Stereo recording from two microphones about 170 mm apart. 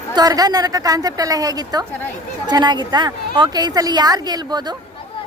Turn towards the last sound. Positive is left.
turn(degrees=-25)  # may be behind; listen again after turning